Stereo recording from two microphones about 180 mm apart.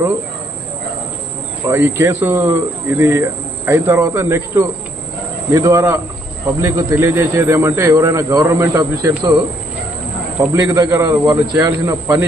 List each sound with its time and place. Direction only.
1.6 s speech: 15° right (ahead or behind)
10.5 s a man's voice: 20° right (ahead or behind)